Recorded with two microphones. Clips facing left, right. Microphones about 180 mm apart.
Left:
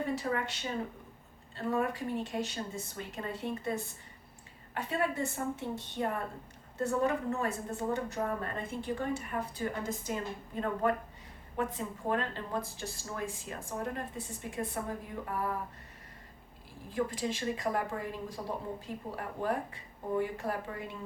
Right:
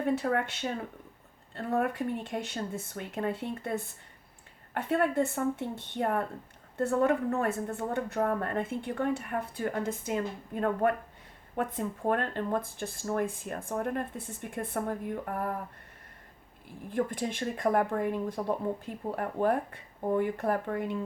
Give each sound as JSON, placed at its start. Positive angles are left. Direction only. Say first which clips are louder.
{"t": 0.0, "sound": "speech", "louder": "right 5 dB", "side_deg": -55}
{"t": 16.9, "sound": "speech", "louder": "right 2 dB", "side_deg": -55}